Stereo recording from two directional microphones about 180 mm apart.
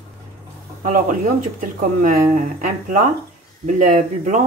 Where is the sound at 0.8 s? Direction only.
50° right (ahead or behind).